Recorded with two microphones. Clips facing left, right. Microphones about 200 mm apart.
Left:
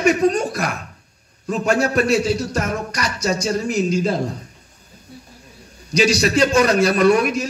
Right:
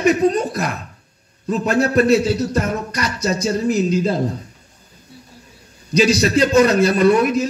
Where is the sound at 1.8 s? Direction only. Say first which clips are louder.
Right 3 dB; 30° right (ahead or behind).